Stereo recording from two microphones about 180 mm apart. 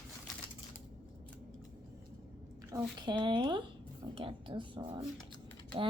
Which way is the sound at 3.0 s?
25° right (ahead or behind).